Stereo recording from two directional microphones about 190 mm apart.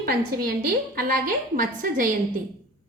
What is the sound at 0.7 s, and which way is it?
A woman's voice, 45° right (ahead or behind).